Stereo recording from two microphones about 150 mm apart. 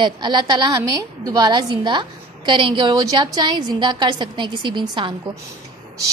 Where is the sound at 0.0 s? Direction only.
30° right (ahead or behind).